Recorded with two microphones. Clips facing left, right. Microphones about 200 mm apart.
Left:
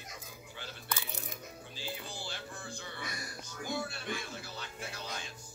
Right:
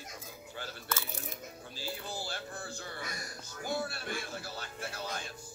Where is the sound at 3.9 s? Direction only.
45° right (ahead or behind).